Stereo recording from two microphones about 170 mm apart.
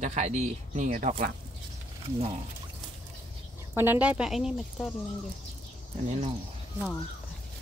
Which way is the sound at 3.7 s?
10° right (ahead or behind).